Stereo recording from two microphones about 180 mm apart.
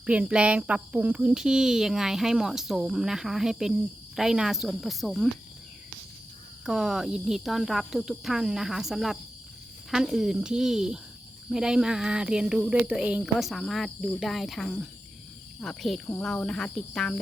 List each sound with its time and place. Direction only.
0.0 s speech: 5° right (ahead or behind)
6.7 s speech: 5° right (ahead or behind)